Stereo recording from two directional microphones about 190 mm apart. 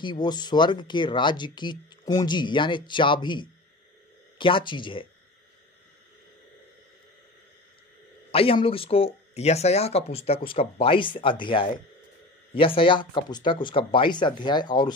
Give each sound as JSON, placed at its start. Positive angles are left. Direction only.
{"t": 0.0, "sound": "speech", "side_deg": 25}
{"t": 8.3, "sound": "speech", "side_deg": 30}